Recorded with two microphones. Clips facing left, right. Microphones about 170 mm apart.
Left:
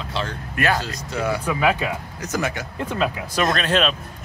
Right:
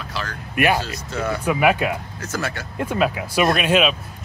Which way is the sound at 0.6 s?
15° right (ahead or behind).